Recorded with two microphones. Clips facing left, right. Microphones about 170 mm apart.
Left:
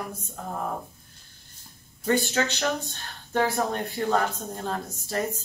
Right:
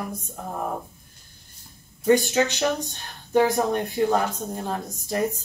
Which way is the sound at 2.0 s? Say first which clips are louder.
Right 5 dB; 15° right (ahead or behind).